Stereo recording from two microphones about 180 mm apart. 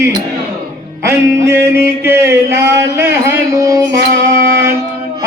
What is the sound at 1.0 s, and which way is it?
Speech, 15° right (ahead or behind).